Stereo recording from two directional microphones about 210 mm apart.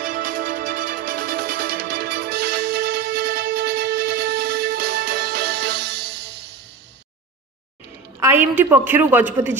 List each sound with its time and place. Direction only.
0.0 s music: 40° right (ahead or behind)
8.2 s a woman's voice: 10° right (ahead or behind)